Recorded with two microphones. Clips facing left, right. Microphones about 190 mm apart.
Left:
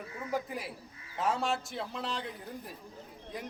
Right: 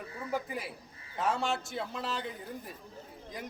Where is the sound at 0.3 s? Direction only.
Centre (ahead or behind).